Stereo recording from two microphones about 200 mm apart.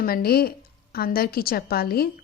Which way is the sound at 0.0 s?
50° left (ahead or behind).